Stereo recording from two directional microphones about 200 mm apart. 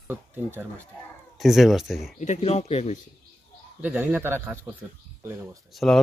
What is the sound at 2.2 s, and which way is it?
Speech, 35° left (ahead or behind).